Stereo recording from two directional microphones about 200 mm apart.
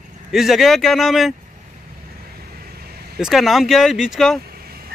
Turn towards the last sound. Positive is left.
turn(degrees=-50)  # may be behind; listen again after turning